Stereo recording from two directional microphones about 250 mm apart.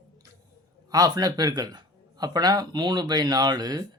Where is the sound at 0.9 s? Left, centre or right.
Centre.